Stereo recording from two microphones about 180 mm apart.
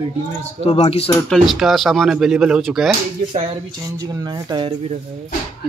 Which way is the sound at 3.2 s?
40° right (ahead or behind).